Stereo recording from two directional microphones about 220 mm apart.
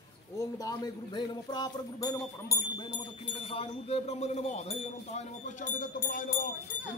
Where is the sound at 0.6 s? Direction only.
20° left (ahead or behind); by 6.3 s 40° left (ahead or behind).